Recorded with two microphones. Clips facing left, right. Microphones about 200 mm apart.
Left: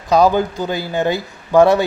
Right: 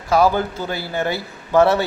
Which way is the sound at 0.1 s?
20° left (ahead or behind).